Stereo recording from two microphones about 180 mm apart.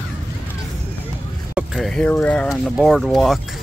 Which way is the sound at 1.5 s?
Centre (ahead or behind).